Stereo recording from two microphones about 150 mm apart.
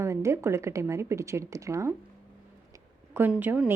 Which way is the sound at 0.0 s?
20° right (ahead or behind).